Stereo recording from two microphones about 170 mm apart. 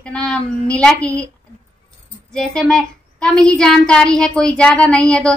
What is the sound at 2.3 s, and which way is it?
A woman's voice, 5° left (ahead or behind).